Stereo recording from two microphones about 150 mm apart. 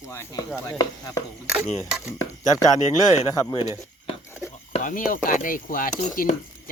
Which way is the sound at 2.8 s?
50° left (ahead or behind).